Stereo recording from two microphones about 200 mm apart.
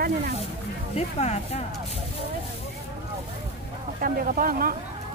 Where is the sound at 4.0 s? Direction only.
45° right (ahead or behind).